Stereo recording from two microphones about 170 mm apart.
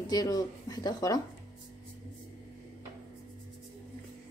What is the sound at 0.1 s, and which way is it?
Speech, 20° left (ahead or behind).